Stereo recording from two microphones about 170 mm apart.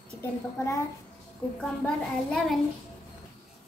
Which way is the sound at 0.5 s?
15° left (ahead or behind).